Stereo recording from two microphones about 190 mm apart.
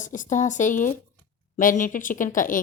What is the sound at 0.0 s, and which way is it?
Speech, 40° left (ahead or behind).